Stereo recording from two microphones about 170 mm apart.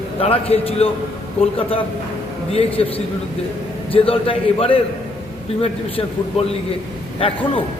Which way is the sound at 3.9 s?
30° left (ahead or behind).